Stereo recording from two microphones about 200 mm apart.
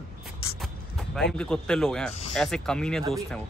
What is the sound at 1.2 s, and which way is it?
A man's voice, 5° left (ahead or behind).